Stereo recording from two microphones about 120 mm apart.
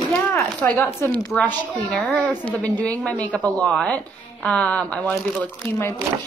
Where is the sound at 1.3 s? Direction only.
10° left (ahead or behind).